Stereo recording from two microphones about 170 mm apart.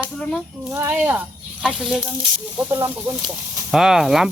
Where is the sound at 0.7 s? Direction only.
15° right (ahead or behind).